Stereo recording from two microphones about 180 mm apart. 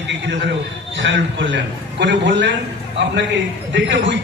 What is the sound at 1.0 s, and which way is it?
A man's voice, 90° right.